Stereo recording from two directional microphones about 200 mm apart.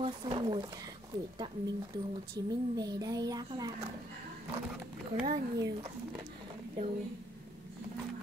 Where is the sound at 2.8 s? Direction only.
20° right (ahead or behind).